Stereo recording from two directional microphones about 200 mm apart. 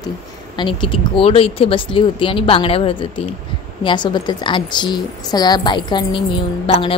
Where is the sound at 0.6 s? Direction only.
25° left (ahead or behind).